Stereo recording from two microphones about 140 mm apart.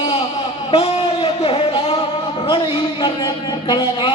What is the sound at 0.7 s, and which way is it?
Speech, 40° left (ahead or behind).